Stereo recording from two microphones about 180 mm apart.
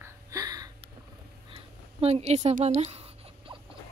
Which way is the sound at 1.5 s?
35° right (ahead or behind).